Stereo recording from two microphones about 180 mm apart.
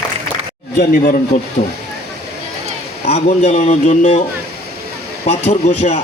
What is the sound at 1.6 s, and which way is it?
Speech, 40° left (ahead or behind).